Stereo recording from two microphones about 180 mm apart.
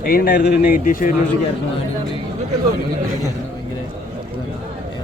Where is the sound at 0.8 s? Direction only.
50° left (ahead or behind).